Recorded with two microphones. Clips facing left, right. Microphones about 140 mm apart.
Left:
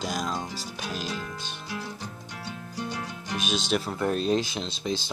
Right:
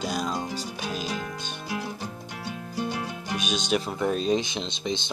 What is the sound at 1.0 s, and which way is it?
Music, 55° right (ahead or behind).